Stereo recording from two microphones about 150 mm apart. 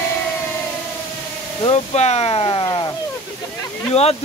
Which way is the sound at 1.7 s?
45° left (ahead or behind).